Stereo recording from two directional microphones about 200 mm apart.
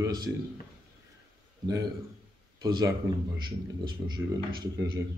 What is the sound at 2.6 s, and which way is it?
Speech, 20° right (ahead or behind).